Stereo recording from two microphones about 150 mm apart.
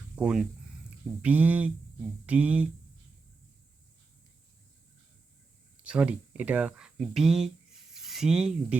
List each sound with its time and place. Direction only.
0.2 s speech: 5° right (ahead or behind)
5.8 s speech: 5° right (ahead or behind)